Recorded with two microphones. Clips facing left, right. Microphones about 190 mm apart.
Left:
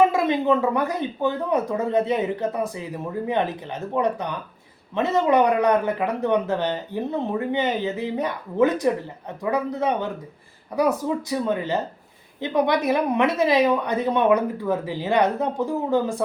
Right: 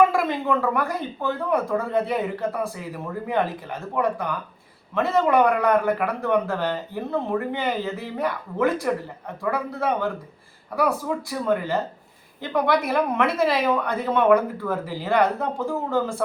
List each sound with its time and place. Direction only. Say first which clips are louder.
0.1 s speech: left 3 dB; 20° left (ahead or behind)